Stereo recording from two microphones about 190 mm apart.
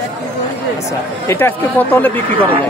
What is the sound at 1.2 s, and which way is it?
Speech, 10° left (ahead or behind).